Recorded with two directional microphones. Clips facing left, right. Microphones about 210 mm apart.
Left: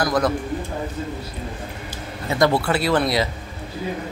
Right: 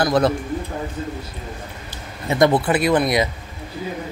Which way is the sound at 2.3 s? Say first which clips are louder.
Right 3 dB; 20° right (ahead or behind).